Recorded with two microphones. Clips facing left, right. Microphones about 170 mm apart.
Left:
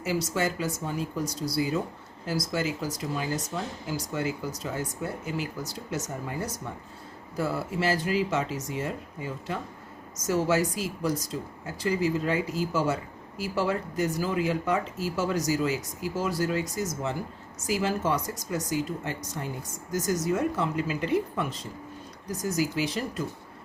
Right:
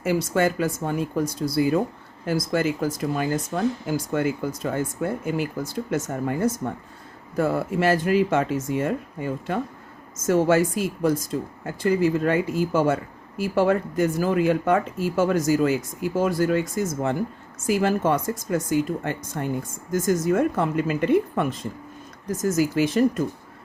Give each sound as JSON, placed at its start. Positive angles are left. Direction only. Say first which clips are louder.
{"t": 0.0, "sound": "speech", "louder": "right 6 dB", "side_deg": -55}